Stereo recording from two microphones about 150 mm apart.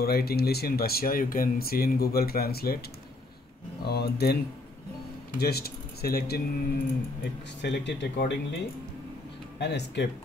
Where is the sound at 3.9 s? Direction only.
90° left.